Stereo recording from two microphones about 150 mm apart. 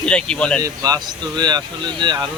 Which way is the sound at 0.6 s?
25° right (ahead or behind).